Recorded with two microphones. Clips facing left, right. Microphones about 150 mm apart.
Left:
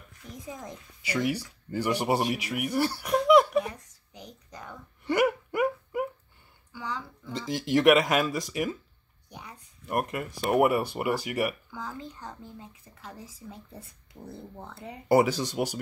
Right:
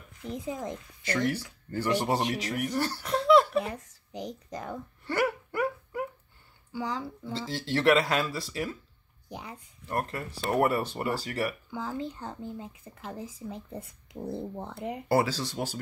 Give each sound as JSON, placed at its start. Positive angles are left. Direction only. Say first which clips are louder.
{"t": 0.3, "sound": "speech", "louder": "right 6 dB", "side_deg": -25}
{"t": 1.0, "sound": "speech", "louder": "even", "side_deg": 10}
{"t": 5.0, "sound": "a sound", "louder": "left 4 dB", "side_deg": 15}
{"t": 6.8, "sound": "speech", "louder": "right 3 dB", "side_deg": -30}
{"t": 7.3, "sound": "speech", "louder": "left 5 dB", "side_deg": 15}
{"t": 9.8, "sound": "speech", "louder": "left 3 dB", "side_deg": 15}
{"t": 11.9, "sound": "speech", "louder": "right 5 dB", "side_deg": -30}
{"t": 15.0, "sound": "speech", "louder": "left 4 dB", "side_deg": 15}